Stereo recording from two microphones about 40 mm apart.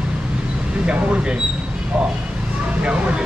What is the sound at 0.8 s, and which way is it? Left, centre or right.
Speech, right.